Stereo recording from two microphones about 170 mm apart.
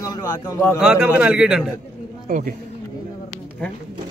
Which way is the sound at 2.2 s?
55° right (ahead or behind).